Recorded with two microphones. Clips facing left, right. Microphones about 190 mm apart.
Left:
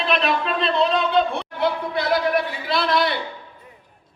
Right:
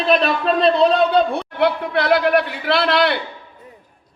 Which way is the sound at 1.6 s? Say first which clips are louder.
Right 4 dB; 65° right (ahead or behind).